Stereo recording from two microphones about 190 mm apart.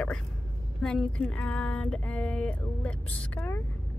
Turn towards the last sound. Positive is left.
turn(degrees=10)  # may be behind; listen again after turning